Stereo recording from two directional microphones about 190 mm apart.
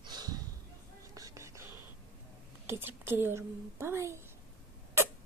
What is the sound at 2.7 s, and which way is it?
A woman's voice, 10° right (ahead or behind).